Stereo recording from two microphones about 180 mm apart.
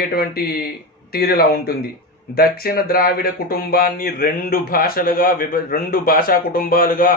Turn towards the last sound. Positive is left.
turn(degrees=55)  # may be behind; listen again after turning